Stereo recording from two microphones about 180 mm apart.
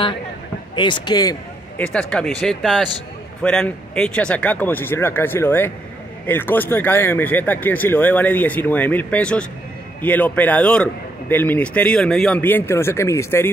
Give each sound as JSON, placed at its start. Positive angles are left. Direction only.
{"t": 0.7, "sound": "speech", "side_deg": 25}
{"t": 1.8, "sound": "a man's voice", "side_deg": 5}